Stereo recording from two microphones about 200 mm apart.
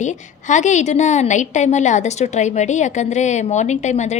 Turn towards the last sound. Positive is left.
turn(degrees=35)  # may be behind; listen again after turning